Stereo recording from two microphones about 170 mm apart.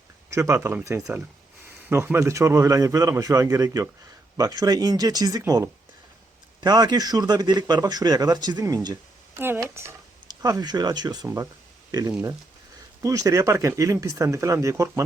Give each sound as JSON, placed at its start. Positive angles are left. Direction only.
{"t": 0.3, "sound": "a man's voice", "side_deg": -15}